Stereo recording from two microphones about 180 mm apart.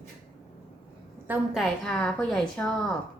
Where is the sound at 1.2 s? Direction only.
5° right (ahead or behind).